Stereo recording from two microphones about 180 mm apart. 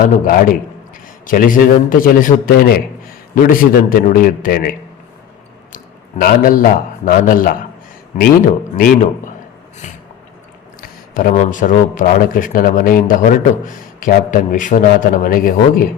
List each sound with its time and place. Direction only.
0.0 s a man's voice: 50° left (ahead or behind)
5.7 s a man's voice: 50° left (ahead or behind)
10.8 s a man's voice: 50° left (ahead or behind)